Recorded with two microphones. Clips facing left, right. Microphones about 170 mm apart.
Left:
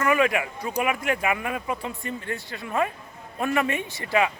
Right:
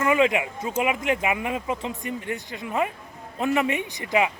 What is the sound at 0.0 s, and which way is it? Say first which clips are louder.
Speech: right 1 dB; 20° right (ahead or behind).